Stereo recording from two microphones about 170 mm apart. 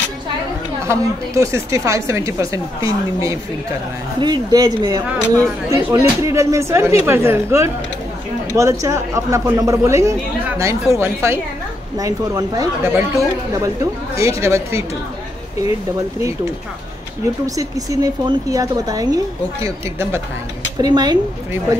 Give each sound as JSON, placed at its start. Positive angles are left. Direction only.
{"t": 0.8, "sound": "a woman's voice", "side_deg": -15}
{"t": 17.6, "sound": "a woman's voice", "side_deg": -20}